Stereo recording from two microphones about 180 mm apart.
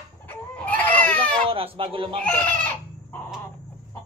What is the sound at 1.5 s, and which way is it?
Speech, 30° right (ahead or behind).